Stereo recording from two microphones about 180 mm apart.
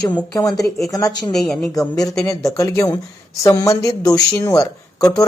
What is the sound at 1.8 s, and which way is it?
Speech, 20° left (ahead or behind).